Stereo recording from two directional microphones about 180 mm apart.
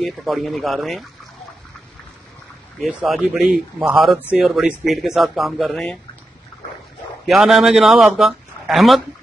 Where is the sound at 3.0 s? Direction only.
Centre (ahead or behind).